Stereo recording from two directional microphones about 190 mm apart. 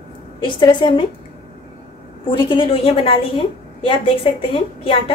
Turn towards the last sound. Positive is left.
turn(degrees=25)  # may be behind; listen again after turning